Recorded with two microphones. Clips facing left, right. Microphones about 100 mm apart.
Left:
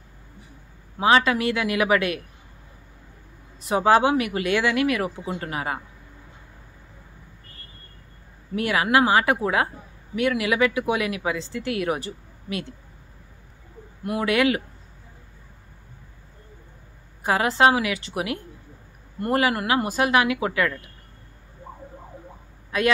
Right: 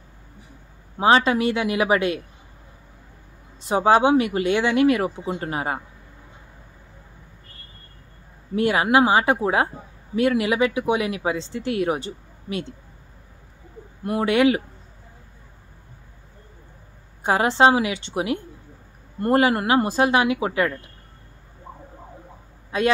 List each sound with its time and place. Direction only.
0.9 s a woman's voice: 30° right (ahead or behind)
3.6 s a woman's voice: 25° right (ahead or behind)
8.5 s a woman's voice: 30° right (ahead or behind)
14.0 s a woman's voice: 30° right (ahead or behind)
17.2 s a woman's voice: 30° right (ahead or behind)
22.7 s a man's voice: 25° right (ahead or behind)